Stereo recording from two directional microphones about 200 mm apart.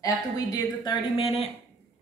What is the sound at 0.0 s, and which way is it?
Speech, 20° left (ahead or behind).